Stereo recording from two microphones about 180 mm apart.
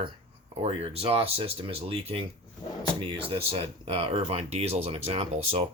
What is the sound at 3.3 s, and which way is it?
Speech, 30° right (ahead or behind).